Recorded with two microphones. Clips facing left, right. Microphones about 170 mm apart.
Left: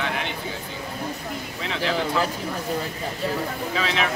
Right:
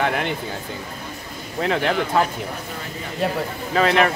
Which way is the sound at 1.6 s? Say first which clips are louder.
Right 7 dB; 50° right (ahead or behind).